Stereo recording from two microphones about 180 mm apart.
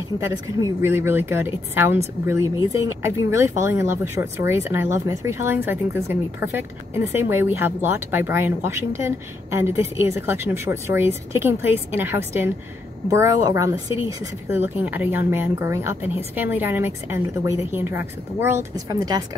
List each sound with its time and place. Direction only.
0.2 s speech: 15° right (ahead or behind)